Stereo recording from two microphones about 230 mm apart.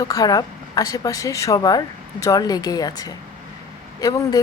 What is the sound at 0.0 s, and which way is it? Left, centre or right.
A woman's voice, centre.